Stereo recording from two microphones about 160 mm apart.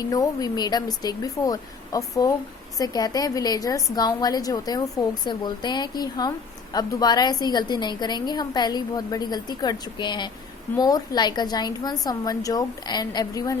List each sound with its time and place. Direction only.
0.1 s a woman's voice: 25° left (ahead or behind)